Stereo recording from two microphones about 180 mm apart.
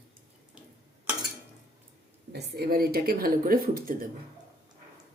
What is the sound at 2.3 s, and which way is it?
Speech, 60° right (ahead or behind).